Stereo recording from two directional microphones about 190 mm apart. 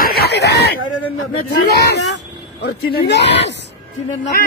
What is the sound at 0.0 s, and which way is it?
Throat clearing, 55° left (ahead or behind).